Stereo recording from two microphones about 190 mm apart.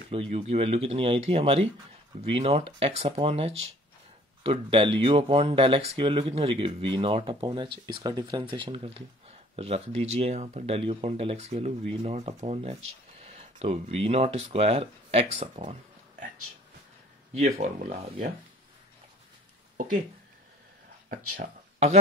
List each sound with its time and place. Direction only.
0.1 s speech: 30° right (ahead or behind)
17.3 s speech: 35° right (ahead or behind)
21.1 s speech: 45° right (ahead or behind)